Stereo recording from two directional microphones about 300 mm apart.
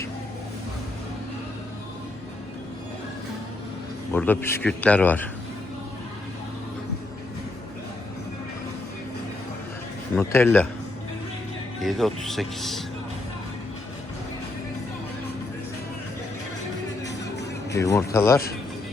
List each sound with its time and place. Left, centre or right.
4.1 s a man's voice: centre
10.2 s speech: centre
11.8 s a man's voice: centre
17.1 s music: left
17.7 s speech: centre